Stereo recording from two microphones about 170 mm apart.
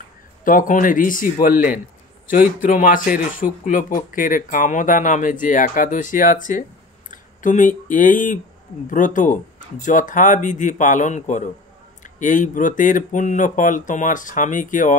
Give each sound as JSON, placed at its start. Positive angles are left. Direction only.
{"t": 0.5, "sound": "speech", "side_deg": 50}